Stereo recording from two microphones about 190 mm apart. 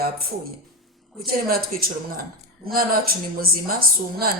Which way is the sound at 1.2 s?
50° right (ahead or behind).